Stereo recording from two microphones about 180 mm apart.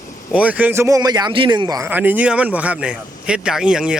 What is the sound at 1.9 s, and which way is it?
Speech, 10° right (ahead or behind).